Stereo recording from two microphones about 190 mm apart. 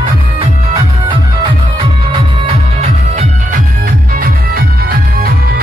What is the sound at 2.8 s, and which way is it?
Music, 40° right (ahead or behind).